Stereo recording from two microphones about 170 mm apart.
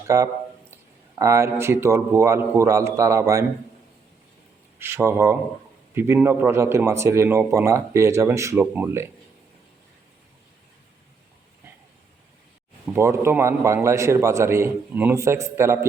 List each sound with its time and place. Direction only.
0.1 s speech: 20° right (ahead or behind)
4.8 s speech: 15° right (ahead or behind)
12.9 s speech: 15° right (ahead or behind)